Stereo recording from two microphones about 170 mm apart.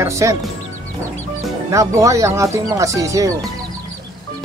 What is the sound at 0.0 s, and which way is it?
Speech, 15° right (ahead or behind).